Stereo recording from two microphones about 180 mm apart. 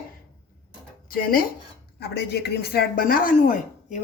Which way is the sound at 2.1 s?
65° left (ahead or behind).